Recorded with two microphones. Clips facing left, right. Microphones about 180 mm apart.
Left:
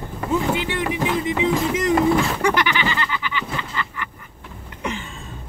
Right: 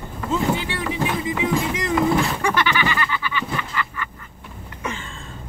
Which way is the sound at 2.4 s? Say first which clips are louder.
Left 1 dB; 15° left (ahead or behind).